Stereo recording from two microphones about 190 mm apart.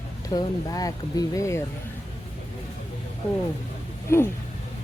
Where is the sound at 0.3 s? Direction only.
20° left (ahead or behind).